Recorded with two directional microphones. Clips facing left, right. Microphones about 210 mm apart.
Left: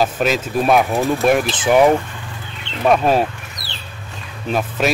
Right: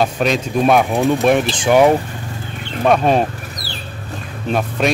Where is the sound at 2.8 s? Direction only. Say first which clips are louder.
Right 1 dB; centre (ahead or behind).